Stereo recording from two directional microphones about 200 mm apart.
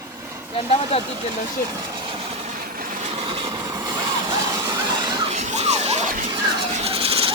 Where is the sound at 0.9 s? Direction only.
30° left (ahead or behind).